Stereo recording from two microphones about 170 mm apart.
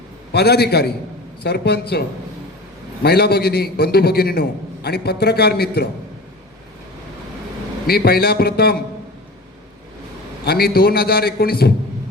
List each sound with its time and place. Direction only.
0.3 s a man's voice: 70° left (ahead or behind)
7.9 s a man's voice: 65° left (ahead or behind)
10.4 s a man's voice: 65° left (ahead or behind)